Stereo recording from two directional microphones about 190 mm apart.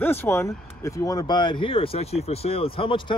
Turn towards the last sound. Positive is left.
turn(degrees=25)  # may be behind; listen again after turning